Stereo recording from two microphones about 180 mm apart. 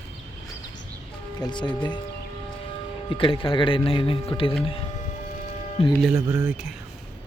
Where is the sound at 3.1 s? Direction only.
30° left (ahead or behind).